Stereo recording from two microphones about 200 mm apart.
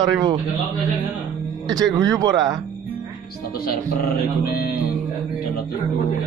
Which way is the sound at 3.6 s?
50° left (ahead or behind).